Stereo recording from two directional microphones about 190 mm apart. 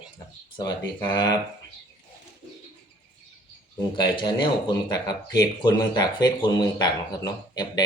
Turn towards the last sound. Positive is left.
turn(degrees=20)  # may be behind; listen again after turning